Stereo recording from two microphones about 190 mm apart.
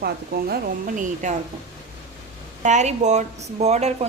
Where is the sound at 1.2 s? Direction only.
40° right (ahead or behind).